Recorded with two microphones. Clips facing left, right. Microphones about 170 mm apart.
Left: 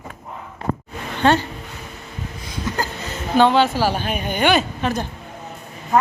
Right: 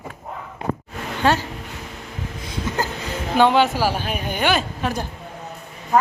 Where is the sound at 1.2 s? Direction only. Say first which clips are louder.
Left 3 dB; 5° right (ahead or behind).